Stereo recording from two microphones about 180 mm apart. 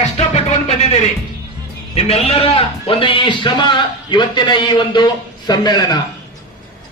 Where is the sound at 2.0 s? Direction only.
35° left (ahead or behind).